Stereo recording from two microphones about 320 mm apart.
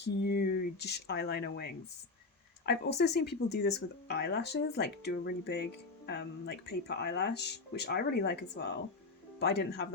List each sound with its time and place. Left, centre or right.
0.2 s speech: left